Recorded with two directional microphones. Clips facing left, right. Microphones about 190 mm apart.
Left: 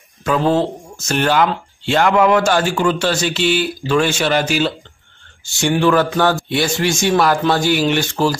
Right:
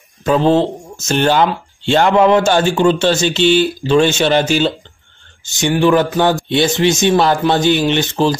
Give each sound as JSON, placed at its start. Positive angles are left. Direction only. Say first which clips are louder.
{"t": 0.2, "sound": "a man's voice", "louder": "right 3 dB", "side_deg": -25}
{"t": 5.8, "sound": "a sound", "louder": "right 2 dB", "side_deg": -15}
{"t": 6.5, "sound": "a man's voice", "louder": "right 4 dB", "side_deg": -20}